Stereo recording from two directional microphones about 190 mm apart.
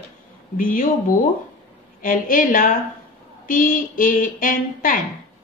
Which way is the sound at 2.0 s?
45° left (ahead or behind).